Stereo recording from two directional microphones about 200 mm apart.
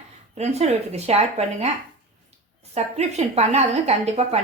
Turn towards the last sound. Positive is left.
turn(degrees=-30)  # may be behind; listen again after turning